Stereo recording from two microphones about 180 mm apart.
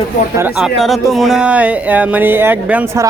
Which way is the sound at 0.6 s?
Centre (ahead or behind).